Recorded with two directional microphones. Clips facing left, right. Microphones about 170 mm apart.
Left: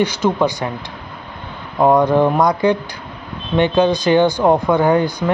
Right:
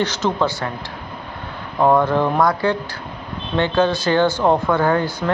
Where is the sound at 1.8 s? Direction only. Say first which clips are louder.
Left 3 dB; 15° left (ahead or behind).